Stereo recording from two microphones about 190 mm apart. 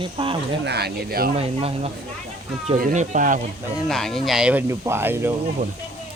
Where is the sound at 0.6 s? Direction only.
60° right (ahead or behind).